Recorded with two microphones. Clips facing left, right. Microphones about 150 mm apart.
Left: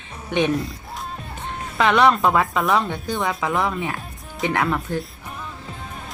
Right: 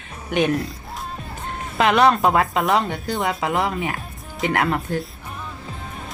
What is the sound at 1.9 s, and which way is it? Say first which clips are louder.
Speech: even; 20° right (ahead or behind).